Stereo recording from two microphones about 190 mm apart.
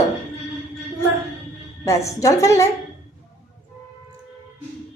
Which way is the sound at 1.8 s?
15° left (ahead or behind).